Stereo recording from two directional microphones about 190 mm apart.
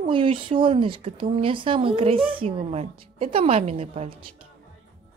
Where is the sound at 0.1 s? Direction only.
30° right (ahead or behind).